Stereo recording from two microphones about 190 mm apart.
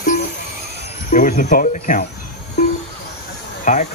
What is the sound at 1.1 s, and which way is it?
Speech, 45° left (ahead or behind).